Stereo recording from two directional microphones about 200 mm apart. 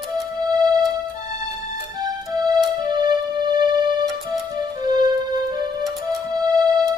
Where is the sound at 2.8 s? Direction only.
20° right (ahead or behind).